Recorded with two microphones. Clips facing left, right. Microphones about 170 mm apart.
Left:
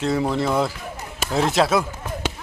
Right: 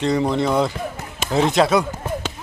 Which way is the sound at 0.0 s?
5° left (ahead or behind).